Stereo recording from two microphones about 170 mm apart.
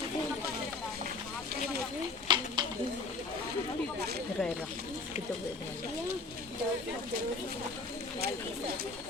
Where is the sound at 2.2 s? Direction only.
25° right (ahead or behind).